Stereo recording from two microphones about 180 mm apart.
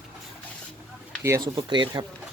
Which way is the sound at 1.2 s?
15° right (ahead or behind).